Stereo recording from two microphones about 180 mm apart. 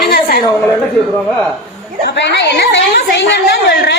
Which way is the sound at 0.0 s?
60° left (ahead or behind).